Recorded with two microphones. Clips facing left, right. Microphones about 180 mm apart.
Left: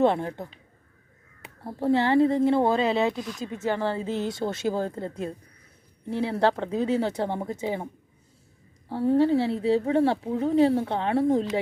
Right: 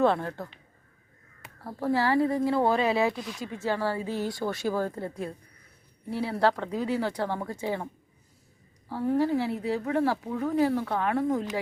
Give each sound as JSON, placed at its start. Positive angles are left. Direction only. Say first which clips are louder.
{"t": 0.0, "sound": "speech", "louder": "left 2 dB", "side_deg": 20}
{"t": 1.6, "sound": "speech", "louder": "left 3 dB", "side_deg": 25}
{"t": 8.9, "sound": "speech", "louder": "left 4 dB", "side_deg": 30}